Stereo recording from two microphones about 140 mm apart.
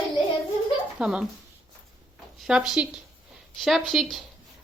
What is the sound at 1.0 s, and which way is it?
Speech, 5° right (ahead or behind).